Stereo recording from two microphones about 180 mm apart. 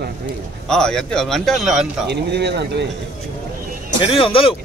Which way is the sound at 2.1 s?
70° right (ahead or behind).